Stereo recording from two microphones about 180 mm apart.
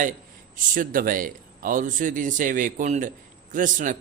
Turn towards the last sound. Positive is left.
turn(degrees=-45)  # may be behind; listen again after turning